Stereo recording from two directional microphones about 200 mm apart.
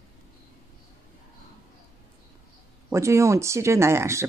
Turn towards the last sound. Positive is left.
turn(degrees=-15)  # may be behind; listen again after turning